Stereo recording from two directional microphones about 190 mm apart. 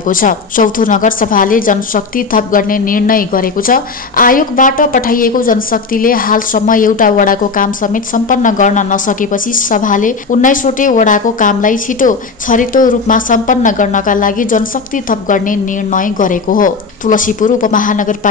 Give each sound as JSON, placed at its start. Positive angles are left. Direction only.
{"t": 0.0, "sound": "a woman's voice", "side_deg": 45}